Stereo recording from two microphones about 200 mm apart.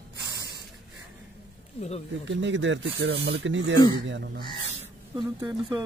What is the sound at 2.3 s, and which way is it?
Speech, 65° right (ahead or behind).